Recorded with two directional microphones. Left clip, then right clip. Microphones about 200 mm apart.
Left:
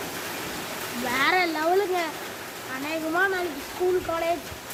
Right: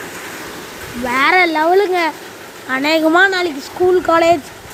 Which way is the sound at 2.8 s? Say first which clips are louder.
Right 13 dB; 45° right (ahead or behind).